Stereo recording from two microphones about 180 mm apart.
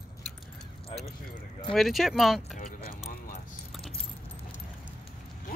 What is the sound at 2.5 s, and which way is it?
Speech, 50° left (ahead or behind).